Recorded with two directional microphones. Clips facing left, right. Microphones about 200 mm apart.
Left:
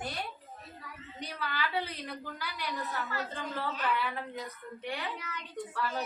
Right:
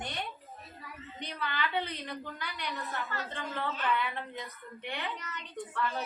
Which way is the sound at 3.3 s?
5° left (ahead or behind).